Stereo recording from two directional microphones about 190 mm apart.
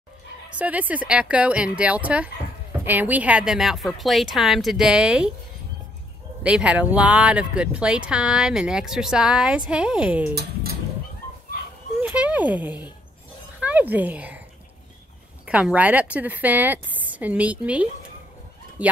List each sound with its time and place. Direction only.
0.6 s a woman's voice: 10° right (ahead or behind)
6.4 s speech: 5° right (ahead or behind)
10.3 s a sound: 55° right (ahead or behind)
12.0 s a child's voice: 5° right (ahead or behind)
15.4 s a woman's voice: 5° right (ahead or behind)